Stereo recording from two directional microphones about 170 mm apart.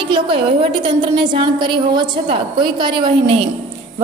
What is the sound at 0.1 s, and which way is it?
A woman's voice, 30° right (ahead or behind).